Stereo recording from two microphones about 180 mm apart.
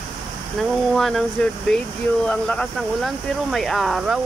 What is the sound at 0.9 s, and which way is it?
Speech, centre (ahead or behind).